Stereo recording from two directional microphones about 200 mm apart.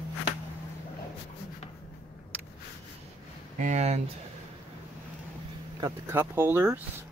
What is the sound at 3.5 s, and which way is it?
Speech, 35° right (ahead or behind).